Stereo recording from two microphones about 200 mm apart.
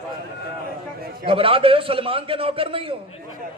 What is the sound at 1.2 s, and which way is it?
A man's voice, 25° right (ahead or behind).